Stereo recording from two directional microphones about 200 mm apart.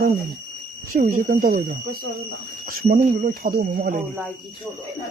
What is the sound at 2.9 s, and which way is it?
Speech, 45° right (ahead or behind).